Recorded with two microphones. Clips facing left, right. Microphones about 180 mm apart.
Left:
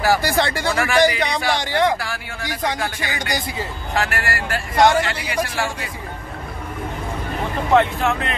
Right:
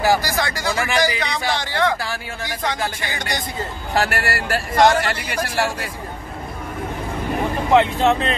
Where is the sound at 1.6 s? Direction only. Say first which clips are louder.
Left 2 dB; 15° left (ahead or behind).